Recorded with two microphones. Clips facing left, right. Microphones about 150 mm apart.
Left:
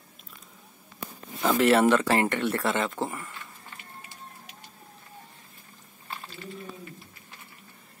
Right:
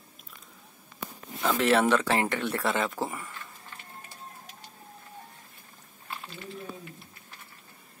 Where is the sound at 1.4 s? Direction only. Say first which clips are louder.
Left 3 dB; centre (ahead or behind).